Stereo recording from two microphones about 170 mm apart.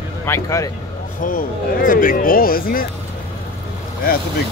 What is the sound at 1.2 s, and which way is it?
Speech, 55° left (ahead or behind).